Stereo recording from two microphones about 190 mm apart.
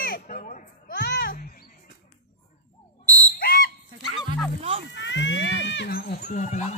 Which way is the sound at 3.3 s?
50° left (ahead or behind).